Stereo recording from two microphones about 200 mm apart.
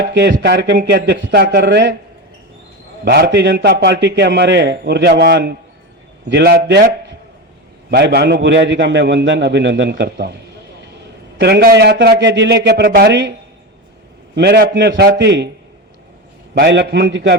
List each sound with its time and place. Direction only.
0.0 s a man's voice: 60° right (ahead or behind)
3.0 s a man's voice: 55° right (ahead or behind)
7.9 s a man's voice: 55° right (ahead or behind)
11.3 s a man's voice: 55° right (ahead or behind)
14.3 s a man's voice: 55° right (ahead or behind)
16.6 s a man's voice: 60° right (ahead or behind)